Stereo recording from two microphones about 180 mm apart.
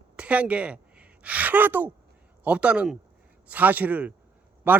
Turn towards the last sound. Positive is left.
turn(degrees=-10)  # may be behind; listen again after turning